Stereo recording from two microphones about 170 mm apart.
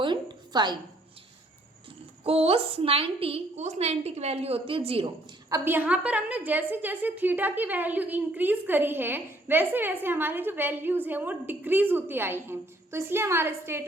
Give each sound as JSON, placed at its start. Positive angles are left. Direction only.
{"t": 0.0, "sound": "a sound", "side_deg": -25}
{"t": 2.2, "sound": "a woman's voice", "side_deg": -35}
{"t": 5.5, "sound": "a woman's voice", "side_deg": -15}